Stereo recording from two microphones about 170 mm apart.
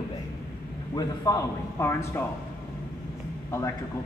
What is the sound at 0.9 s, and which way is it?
Speech, 20° left (ahead or behind).